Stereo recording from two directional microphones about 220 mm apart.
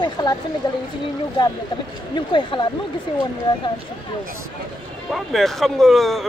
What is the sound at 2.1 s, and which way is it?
Speech, 20° left (ahead or behind).